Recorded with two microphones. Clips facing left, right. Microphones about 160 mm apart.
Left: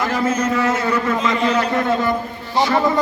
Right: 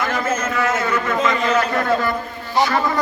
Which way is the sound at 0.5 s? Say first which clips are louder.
Left 2 dB; 30° left (ahead or behind).